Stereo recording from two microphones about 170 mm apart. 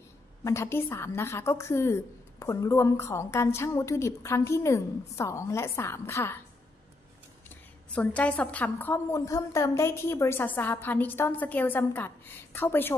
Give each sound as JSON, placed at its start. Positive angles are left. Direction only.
{"t": 0.4, "sound": "a woman's voice", "side_deg": 15}
{"t": 7.9, "sound": "a woman's voice", "side_deg": 10}